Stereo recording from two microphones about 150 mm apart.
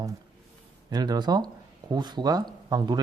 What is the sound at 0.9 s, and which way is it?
Speech, 30° right (ahead or behind).